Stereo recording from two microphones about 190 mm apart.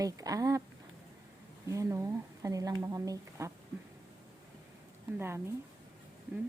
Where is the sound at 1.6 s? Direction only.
15° right (ahead or behind).